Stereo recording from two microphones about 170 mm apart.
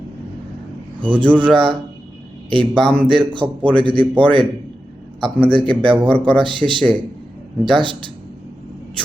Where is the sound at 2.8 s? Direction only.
5° left (ahead or behind).